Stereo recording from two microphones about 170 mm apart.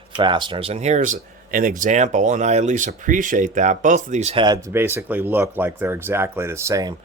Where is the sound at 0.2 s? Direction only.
30° right (ahead or behind).